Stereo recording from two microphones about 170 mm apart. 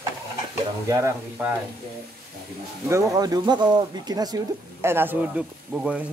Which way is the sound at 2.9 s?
20° right (ahead or behind).